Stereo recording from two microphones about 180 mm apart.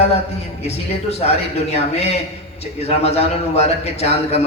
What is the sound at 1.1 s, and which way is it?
A man's voice, 35° left (ahead or behind).